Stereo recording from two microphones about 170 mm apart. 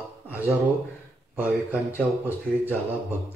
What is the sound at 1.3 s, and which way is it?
Speech, 10° right (ahead or behind).